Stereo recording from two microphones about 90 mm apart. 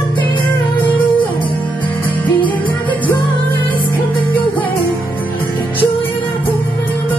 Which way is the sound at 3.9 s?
20° left (ahead or behind).